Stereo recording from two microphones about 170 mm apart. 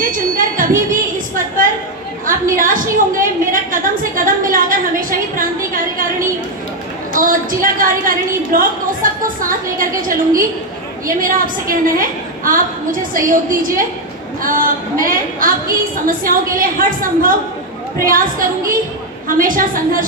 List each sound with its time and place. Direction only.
0.0 s a sound: 55° right (ahead or behind)
2.5 s a woman's voice: 55° right (ahead or behind)
7.6 s a woman's voice: 55° right (ahead or behind)
9.0 s a sound: 55° right (ahead or behind)
9.5 s a woman's voice: 55° right (ahead or behind)
19.2 s a woman's voice: 55° right (ahead or behind)